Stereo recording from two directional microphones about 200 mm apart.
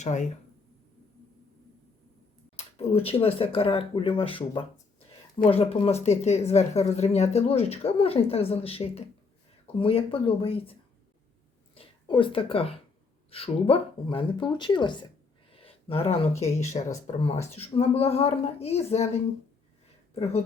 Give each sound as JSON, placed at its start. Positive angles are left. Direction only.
{"t": 0.0, "sound": "a woman's voice", "side_deg": 35}
{"t": 2.6, "sound": "a woman's voice", "side_deg": 30}
{"t": 15.5, "sound": "a sound", "side_deg": 30}
{"t": 16.7, "sound": "a woman's voice", "side_deg": 35}